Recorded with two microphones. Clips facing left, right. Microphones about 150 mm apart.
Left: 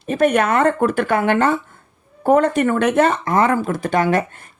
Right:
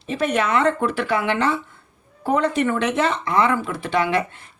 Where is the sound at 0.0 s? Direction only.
50° left (ahead or behind).